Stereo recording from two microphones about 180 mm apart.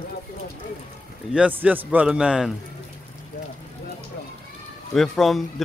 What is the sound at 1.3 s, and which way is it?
A man's voice, 5° right (ahead or behind).